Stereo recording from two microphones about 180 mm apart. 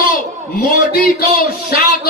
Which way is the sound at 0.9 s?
60° left (ahead or behind).